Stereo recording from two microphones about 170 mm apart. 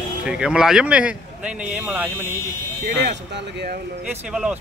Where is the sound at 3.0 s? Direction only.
90° right.